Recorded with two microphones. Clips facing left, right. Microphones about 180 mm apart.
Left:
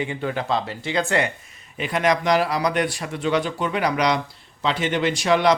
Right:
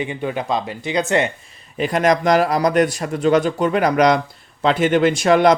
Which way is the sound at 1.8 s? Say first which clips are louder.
Right 5 dB; 40° right (ahead or behind).